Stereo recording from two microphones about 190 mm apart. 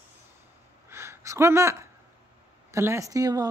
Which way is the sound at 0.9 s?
15° right (ahead or behind).